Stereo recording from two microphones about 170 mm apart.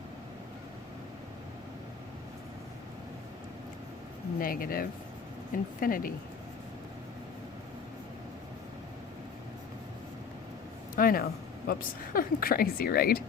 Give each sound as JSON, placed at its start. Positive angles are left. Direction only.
{"t": 4.4, "sound": "speech", "side_deg": 55}
{"t": 10.9, "sound": "speech", "side_deg": 60}